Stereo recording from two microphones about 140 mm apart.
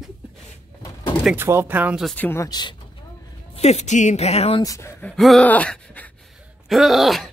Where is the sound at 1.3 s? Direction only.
15° right (ahead or behind).